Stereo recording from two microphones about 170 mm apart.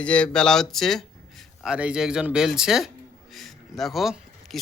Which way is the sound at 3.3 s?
Centre (ahead or behind).